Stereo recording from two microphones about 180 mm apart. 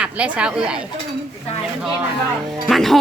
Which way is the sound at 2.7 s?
Centre (ahead or behind).